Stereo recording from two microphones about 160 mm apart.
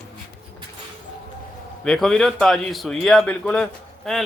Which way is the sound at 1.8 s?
5° left (ahead or behind).